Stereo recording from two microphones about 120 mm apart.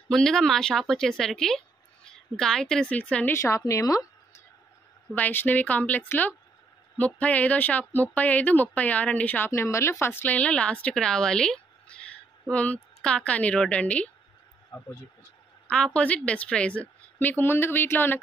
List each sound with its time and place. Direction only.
0.1 s a woman's voice: 5° left (ahead or behind)
3.3 s a woman's voice: 25° left (ahead or behind)
5.1 s speech: 15° left (ahead or behind)
15.7 s speech: 10° left (ahead or behind)